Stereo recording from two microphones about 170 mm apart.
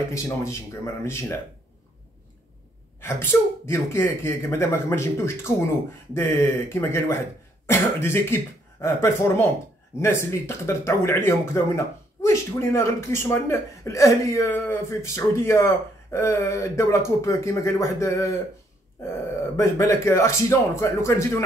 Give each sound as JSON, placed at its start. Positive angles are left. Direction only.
{"t": 0.1, "sound": "speech", "side_deg": 15}
{"t": 3.0, "sound": "speech", "side_deg": 15}
{"t": 19.5, "sound": "speech", "side_deg": 20}